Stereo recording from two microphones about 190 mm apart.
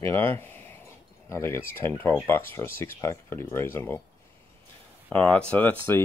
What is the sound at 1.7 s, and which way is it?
Speech, 10° left (ahead or behind).